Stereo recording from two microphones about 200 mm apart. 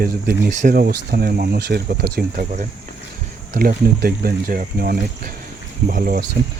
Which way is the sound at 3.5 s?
45° right (ahead or behind).